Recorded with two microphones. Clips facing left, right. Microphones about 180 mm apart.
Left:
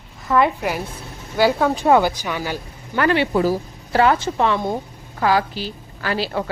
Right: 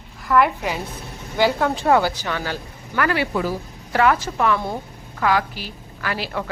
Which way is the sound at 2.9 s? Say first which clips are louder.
Left 4 dB; 25° left (ahead or behind).